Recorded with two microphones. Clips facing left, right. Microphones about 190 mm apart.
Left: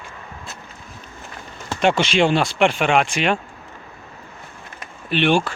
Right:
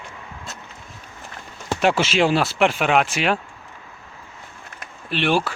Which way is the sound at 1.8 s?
5° right (ahead or behind).